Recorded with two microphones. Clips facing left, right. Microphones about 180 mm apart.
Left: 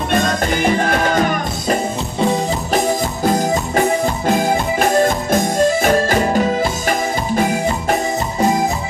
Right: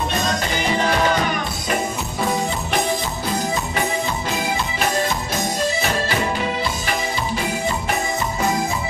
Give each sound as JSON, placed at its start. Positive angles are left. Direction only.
{"t": 0.1, "sound": "music", "side_deg": 50}
{"t": 3.3, "sound": "music", "side_deg": 45}